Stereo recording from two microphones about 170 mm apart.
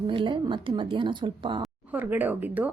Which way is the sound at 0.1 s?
30° right (ahead or behind).